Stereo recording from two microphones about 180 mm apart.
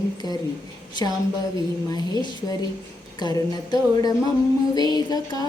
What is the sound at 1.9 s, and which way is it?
Music, 20° left (ahead or behind).